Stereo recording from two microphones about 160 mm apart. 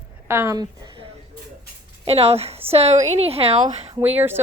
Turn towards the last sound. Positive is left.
turn(degrees=-15)  # may be behind; listen again after turning